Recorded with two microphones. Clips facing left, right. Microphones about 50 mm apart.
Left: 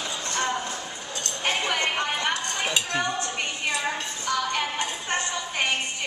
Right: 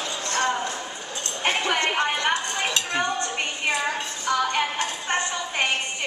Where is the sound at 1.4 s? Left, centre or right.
Centre.